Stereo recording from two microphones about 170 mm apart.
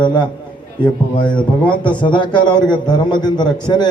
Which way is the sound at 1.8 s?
30° left (ahead or behind).